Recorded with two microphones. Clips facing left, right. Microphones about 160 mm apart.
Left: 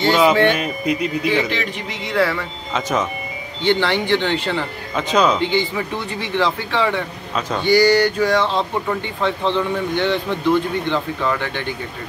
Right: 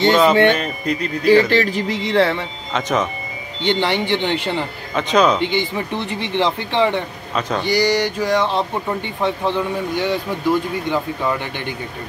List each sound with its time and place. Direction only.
0.0 s speech: 5° left (ahead or behind)
2.0 s speech: 25° right (ahead or behind)
2.7 s speech: 5° left (ahead or behind)
3.6 s speech: 15° right (ahead or behind)
4.9 s speech: centre (ahead or behind)
5.4 s speech: 15° right (ahead or behind)